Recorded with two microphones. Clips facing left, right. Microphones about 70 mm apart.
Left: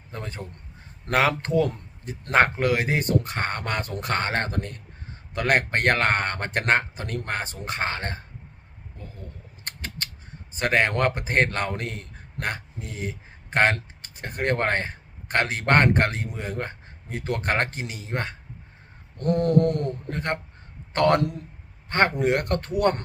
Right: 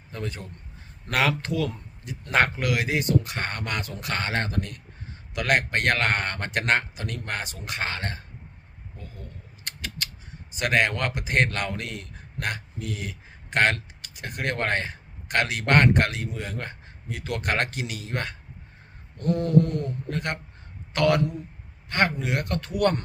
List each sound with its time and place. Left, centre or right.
0.1 s a man's voice: left
9.6 s creak: left
10.5 s a man's voice: left
19.2 s a sound: left
20.1 s a man's voice: left
22.2 s a sound: left
22.7 s speech: left